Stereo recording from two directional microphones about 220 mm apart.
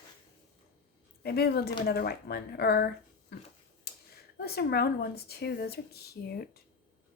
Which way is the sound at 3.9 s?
45° left (ahead or behind).